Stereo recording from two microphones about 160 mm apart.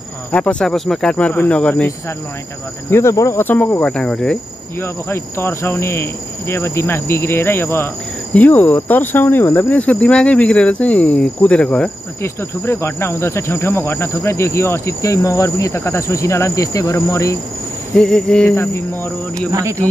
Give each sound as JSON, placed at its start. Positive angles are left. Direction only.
{"t": 0.3, "sound": "speech", "side_deg": 5}
{"t": 2.9, "sound": "speech", "side_deg": 15}
{"t": 17.9, "sound": "cricket", "side_deg": 5}